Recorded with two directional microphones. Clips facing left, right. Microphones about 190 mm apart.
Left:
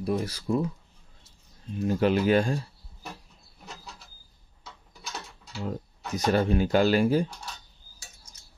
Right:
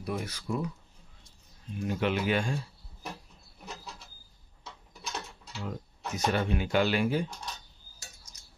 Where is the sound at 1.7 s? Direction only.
40° left (ahead or behind).